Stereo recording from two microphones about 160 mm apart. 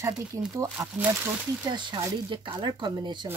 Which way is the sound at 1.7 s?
30° right (ahead or behind).